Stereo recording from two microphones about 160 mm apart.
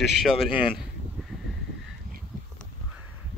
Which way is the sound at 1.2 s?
Centre (ahead or behind).